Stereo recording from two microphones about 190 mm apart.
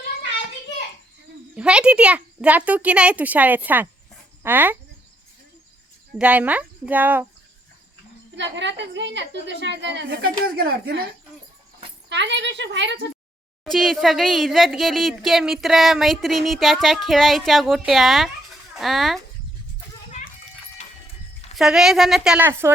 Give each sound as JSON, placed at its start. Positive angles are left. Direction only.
{"t": 1.5, "sound": "a child's voice", "side_deg": -5}
{"t": 6.1, "sound": "a child's voice", "side_deg": -5}
{"t": 8.4, "sound": "a woman's voice", "side_deg": -70}
{"t": 12.0, "sound": "a woman's voice", "side_deg": -65}
{"t": 13.7, "sound": "speech", "side_deg": 0}
{"t": 21.6, "sound": "speech", "side_deg": 0}